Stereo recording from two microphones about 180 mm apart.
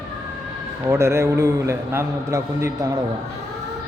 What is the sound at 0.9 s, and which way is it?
A man's voice, 15° right (ahead or behind).